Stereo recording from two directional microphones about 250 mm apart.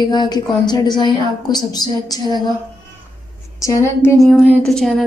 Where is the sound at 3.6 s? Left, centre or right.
Centre.